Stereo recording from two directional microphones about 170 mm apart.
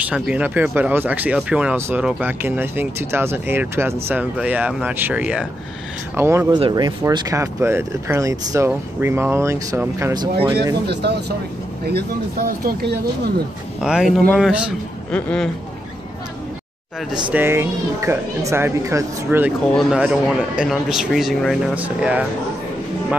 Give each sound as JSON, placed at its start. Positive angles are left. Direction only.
{"t": 0.0, "sound": "speech", "side_deg": -10}
{"t": 6.5, "sound": "speech", "side_deg": -25}
{"t": 10.9, "sound": "speech", "side_deg": -80}
{"t": 11.9, "sound": "speech", "side_deg": -60}
{"t": 13.7, "sound": "a man's voice", "side_deg": -5}
{"t": 15.0, "sound": "speech", "side_deg": 5}
{"t": 17.3, "sound": "speech", "side_deg": -15}
{"t": 19.7, "sound": "a man's voice", "side_deg": 0}